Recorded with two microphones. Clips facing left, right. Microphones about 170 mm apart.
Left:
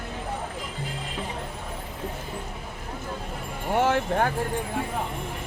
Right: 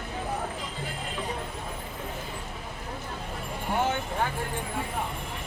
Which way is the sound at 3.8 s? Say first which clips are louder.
Left 6 dB; 80° left.